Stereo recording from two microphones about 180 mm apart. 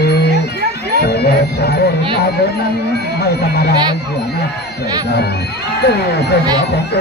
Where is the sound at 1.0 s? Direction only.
65° left (ahead or behind).